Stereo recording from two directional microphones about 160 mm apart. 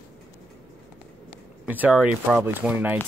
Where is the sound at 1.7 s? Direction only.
10° right (ahead or behind).